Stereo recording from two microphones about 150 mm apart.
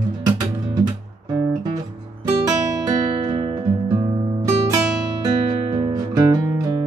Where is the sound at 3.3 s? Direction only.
30° right (ahead or behind).